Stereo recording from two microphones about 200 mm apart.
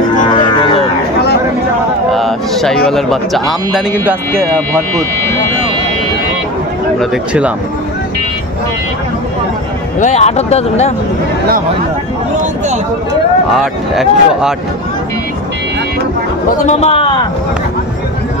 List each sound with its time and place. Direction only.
2.1 s a sound: centre (ahead or behind)
2.9 s speech: centre (ahead or behind)
4.0 s speech: 10° right (ahead or behind)
7.0 s speech: 5° right (ahead or behind)
9.9 s speech: 35° left (ahead or behind)
13.5 s speech: centre (ahead or behind)
16.6 s a man's voice: 30° left (ahead or behind)